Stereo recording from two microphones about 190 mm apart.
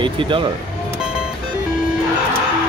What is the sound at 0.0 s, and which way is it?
Speech, 25° right (ahead or behind).